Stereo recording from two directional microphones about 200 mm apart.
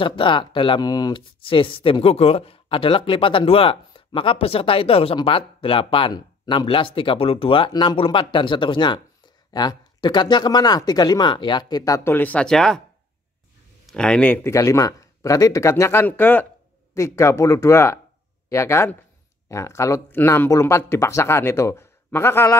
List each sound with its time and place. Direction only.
0.0 s speech: 25° left (ahead or behind); by 12.8 s 5° left (ahead or behind)
13.8 s speech: 5° left (ahead or behind)